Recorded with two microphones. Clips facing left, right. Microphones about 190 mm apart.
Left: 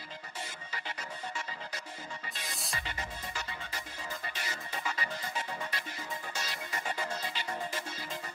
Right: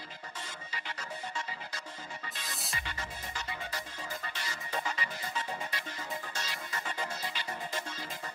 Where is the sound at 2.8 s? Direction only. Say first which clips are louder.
Left 1 dB; 20° left (ahead or behind).